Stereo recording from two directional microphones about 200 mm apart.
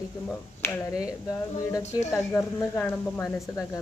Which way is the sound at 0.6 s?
15° left (ahead or behind).